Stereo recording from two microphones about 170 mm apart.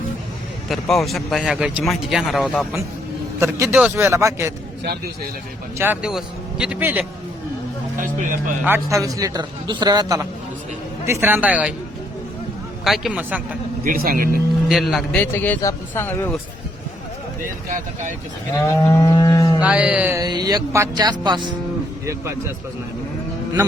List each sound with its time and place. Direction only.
0.7 s a man's voice: centre (ahead or behind); by 4.5 s 15° right (ahead or behind)
5.7 s a man's voice: 10° right (ahead or behind)
8.0 s speech: 50° right (ahead or behind)
8.6 s a man's voice: 15° right (ahead or behind)
12.8 s a man's voice: centre (ahead or behind)
13.8 s speech: 55° right (ahead or behind)
14.7 s speech: centre (ahead or behind)
15.1 s speech: 10° left (ahead or behind)
18.5 s livestock: 20° left (ahead or behind)
19.6 s a man's voice: 5° right (ahead or behind)
20.2 s a man's voice: 25° right (ahead or behind)
22.0 s a man's voice: 15° right (ahead or behind)